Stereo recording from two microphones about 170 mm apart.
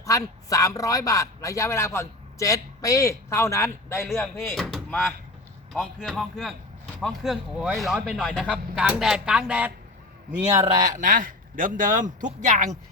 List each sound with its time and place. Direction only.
0.0 s a man's voice: 20° left (ahead or behind)
4.5 s speech: centre (ahead or behind)
10.5 s a man's voice: 25° right (ahead or behind)
10.8 s speech: 50° right (ahead or behind)